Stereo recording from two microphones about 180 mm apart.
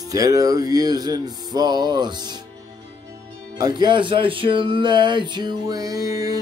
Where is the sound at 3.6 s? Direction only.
25° right (ahead or behind).